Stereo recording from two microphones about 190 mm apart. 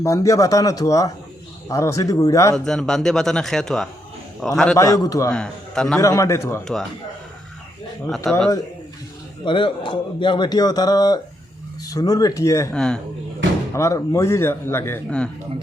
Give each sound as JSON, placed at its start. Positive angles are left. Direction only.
{"t": 0.0, "sound": "a man's voice", "side_deg": 15}
{"t": 2.6, "sound": "speech", "side_deg": 0}
{"t": 4.8, "sound": "a man's voice", "side_deg": 15}
{"t": 5.3, "sound": "speech", "side_deg": 5}
{"t": 6.0, "sound": "a man's voice", "side_deg": 15}
{"t": 8.0, "sound": "speech", "side_deg": 5}
{"t": 9.4, "sound": "a man's voice", "side_deg": 25}
{"t": 12.7, "sound": "speech", "side_deg": 5}
{"t": 13.7, "sound": "a man's voice", "side_deg": 15}